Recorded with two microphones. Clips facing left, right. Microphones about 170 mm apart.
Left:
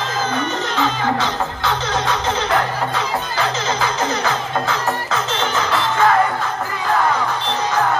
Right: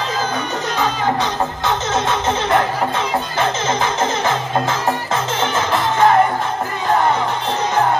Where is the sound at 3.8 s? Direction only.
20° right (ahead or behind).